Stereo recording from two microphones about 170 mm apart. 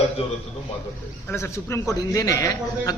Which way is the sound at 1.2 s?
15° left (ahead or behind).